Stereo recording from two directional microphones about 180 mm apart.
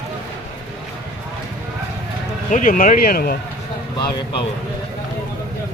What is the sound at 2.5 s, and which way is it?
Speech, 45° left (ahead or behind).